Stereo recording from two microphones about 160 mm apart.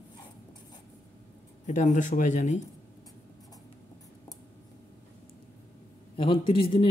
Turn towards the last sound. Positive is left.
turn(degrees=35)  # may be behind; listen again after turning